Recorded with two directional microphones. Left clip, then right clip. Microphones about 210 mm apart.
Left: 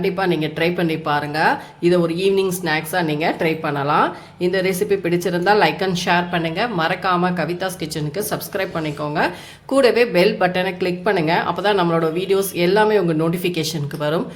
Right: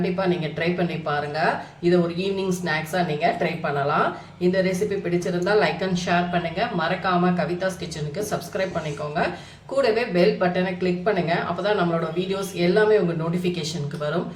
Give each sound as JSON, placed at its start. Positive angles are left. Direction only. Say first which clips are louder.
{"t": 0.0, "sound": "speech", "louder": "left 4 dB", "side_deg": 50}